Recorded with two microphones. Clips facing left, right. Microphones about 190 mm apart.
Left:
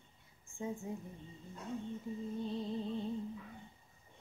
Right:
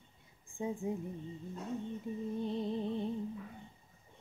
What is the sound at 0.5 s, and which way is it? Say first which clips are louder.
Speech: right 3 dB; 15° right (ahead or behind).